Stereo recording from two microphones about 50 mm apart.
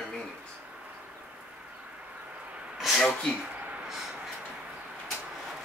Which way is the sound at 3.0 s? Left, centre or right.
Centre.